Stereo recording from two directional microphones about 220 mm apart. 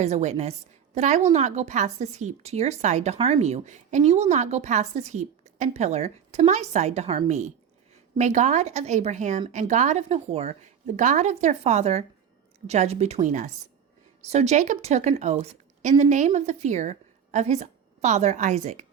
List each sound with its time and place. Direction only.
0.0 s a woman's voice: 30° right (ahead or behind)